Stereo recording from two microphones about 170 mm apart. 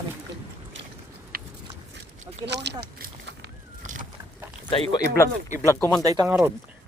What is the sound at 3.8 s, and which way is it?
Vehicle, 50° right (ahead or behind).